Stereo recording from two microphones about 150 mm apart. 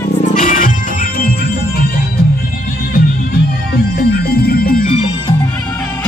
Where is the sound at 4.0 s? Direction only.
90° left.